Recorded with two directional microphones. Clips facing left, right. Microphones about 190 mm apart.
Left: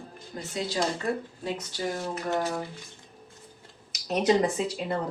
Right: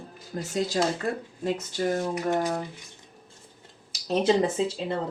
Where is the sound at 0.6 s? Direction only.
45° right (ahead or behind).